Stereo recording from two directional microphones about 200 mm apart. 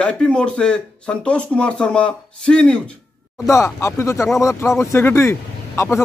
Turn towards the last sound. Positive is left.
turn(degrees=15)  # may be behind; listen again after turning